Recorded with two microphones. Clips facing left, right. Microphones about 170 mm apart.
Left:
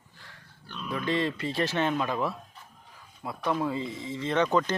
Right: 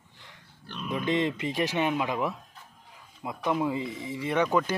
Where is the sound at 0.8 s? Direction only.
20° right (ahead or behind).